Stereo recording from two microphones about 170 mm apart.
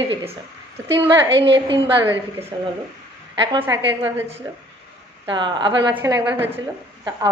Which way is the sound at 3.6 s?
10° right (ahead or behind).